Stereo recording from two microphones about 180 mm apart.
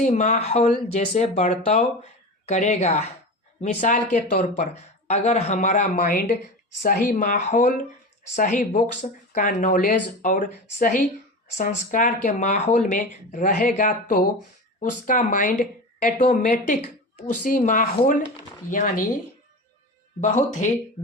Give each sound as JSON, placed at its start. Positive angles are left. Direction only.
{"t": 0.0, "sound": "speech", "side_deg": 40}
{"t": 16.8, "sound": "speech", "side_deg": 40}
{"t": 20.2, "sound": "speech", "side_deg": 45}